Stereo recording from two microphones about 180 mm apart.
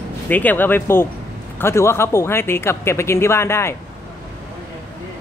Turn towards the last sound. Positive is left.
turn(degrees=15)  # may be behind; listen again after turning